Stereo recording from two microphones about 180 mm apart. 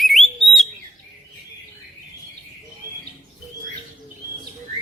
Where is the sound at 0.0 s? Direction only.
Centre (ahead or behind).